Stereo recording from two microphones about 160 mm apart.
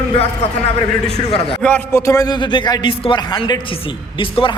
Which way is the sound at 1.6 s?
10° left (ahead or behind).